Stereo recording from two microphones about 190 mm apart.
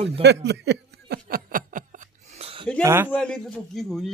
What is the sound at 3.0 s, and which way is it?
A man's voice, 5° left (ahead or behind).